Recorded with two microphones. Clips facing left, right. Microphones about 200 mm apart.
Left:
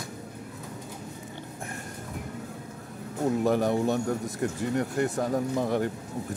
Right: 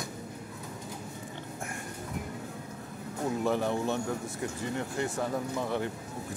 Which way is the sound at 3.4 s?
45° left (ahead or behind).